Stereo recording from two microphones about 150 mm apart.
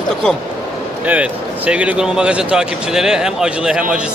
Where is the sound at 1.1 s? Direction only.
10° right (ahead or behind).